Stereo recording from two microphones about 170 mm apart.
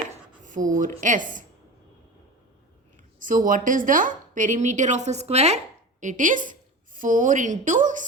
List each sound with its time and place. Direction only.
0.4 s a woman's voice: 50° right (ahead or behind)
3.2 s a woman's voice: 50° right (ahead or behind)